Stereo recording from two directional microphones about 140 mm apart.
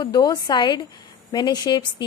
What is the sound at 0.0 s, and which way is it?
A woman's voice, 30° left (ahead or behind).